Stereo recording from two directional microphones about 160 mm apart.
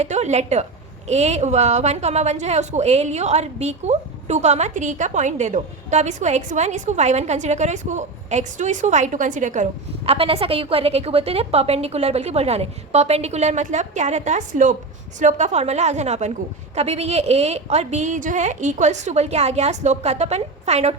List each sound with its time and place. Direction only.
0.0 s a woman's voice: 45° right (ahead or behind)
10.1 s a woman's voice: 35° right (ahead or behind)